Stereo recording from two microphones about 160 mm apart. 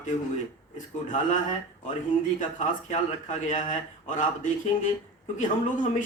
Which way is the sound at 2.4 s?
55° left (ahead or behind).